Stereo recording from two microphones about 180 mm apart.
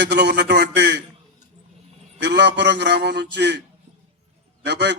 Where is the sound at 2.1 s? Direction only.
75° right (ahead or behind).